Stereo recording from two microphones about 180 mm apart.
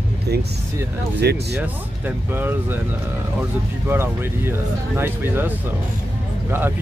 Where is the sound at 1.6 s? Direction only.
10° right (ahead or behind).